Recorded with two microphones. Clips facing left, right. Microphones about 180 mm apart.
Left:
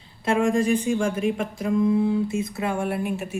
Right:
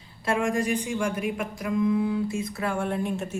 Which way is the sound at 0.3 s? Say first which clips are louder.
Left 4 dB; 25° left (ahead or behind).